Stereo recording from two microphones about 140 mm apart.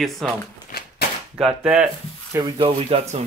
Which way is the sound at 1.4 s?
5° right (ahead or behind).